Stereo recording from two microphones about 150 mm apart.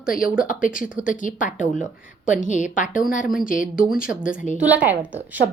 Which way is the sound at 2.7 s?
60° left (ahead or behind).